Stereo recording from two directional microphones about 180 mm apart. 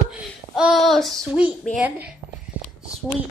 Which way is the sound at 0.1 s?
5° right (ahead or behind).